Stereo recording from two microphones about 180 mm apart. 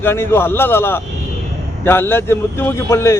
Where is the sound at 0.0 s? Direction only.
15° left (ahead or behind).